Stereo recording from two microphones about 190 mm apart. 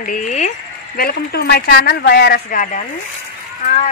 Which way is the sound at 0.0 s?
45° left (ahead or behind).